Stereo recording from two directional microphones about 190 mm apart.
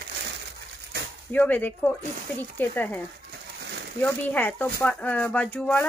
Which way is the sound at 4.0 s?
10° left (ahead or behind).